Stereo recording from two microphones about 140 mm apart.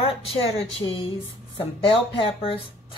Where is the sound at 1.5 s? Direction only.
40° left (ahead or behind).